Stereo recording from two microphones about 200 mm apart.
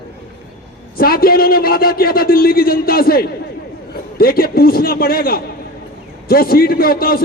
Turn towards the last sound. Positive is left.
turn(degrees=50)  # may be behind; listen again after turning